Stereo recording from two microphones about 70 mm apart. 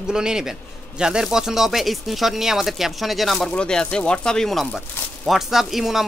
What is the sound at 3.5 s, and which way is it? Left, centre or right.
Speech, centre.